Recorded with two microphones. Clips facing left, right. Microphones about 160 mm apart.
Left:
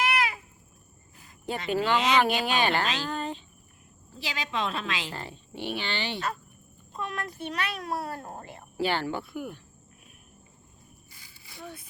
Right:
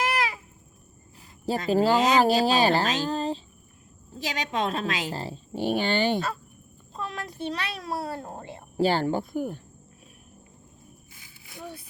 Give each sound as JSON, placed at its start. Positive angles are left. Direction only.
{"t": 1.5, "sound": "a woman's voice", "side_deg": -40}
{"t": 4.2, "sound": "a woman's voice", "side_deg": -45}
{"t": 6.9, "sound": "a child's voice", "side_deg": -30}
{"t": 8.8, "sound": "a woman's voice", "side_deg": -40}